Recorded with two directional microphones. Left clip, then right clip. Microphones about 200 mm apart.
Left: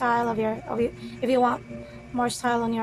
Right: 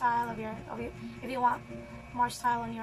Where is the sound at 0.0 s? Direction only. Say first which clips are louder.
Left 6 dB; 45° left (ahead or behind).